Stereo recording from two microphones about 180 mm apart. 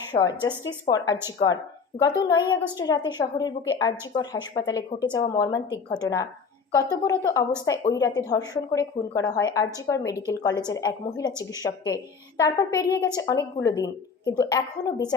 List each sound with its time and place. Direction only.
0.2 s a woman's voice: 20° left (ahead or behind)
12.4 s a woman's voice: 20° left (ahead or behind)